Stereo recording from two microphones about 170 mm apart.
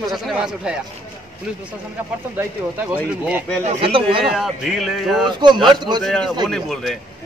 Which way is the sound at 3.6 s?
35° right (ahead or behind).